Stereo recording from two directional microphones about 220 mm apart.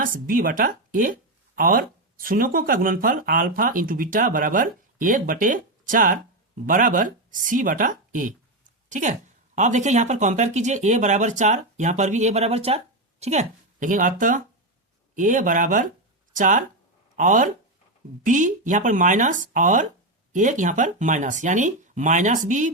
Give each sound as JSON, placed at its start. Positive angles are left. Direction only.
{"t": 0.0, "sound": "speech", "side_deg": -40}